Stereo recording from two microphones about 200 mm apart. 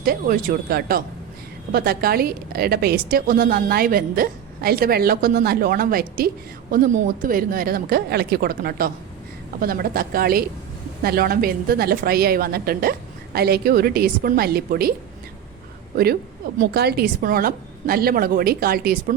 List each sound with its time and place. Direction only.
0.0 s a woman's voice: 50° right (ahead or behind)
16.6 s a woman's voice: 50° right (ahead or behind)